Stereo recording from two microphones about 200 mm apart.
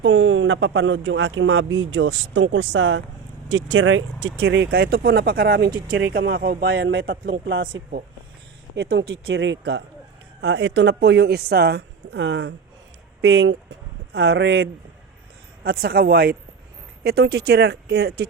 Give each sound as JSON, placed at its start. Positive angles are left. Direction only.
{"t": 0.0, "sound": "speech", "side_deg": -70}
{"t": 15.6, "sound": "speech", "side_deg": -50}